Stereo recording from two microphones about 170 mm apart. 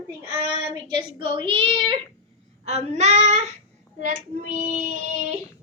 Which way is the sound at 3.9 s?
50° right (ahead or behind).